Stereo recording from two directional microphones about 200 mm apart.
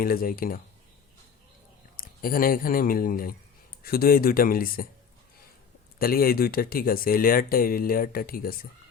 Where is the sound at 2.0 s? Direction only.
45° left (ahead or behind).